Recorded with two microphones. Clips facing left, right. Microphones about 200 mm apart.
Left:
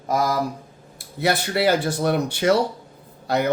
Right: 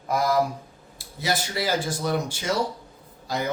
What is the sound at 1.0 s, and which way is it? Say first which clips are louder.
Speech: left 5 dB; 60° left (ahead or behind).